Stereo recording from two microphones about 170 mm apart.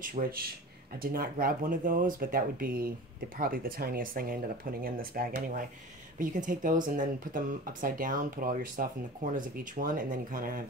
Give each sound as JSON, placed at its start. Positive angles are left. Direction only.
{"t": 0.0, "sound": "speech", "side_deg": -55}